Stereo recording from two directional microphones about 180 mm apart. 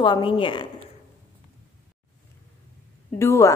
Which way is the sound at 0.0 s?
25° left (ahead or behind).